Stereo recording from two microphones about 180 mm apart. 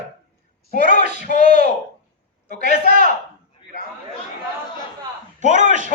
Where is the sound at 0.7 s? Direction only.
50° left (ahead or behind).